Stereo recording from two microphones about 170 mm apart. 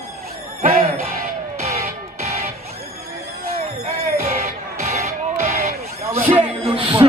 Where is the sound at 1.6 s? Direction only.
40° right (ahead or behind).